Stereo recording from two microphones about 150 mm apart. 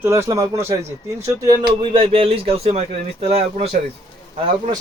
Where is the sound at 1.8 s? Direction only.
40° right (ahead or behind).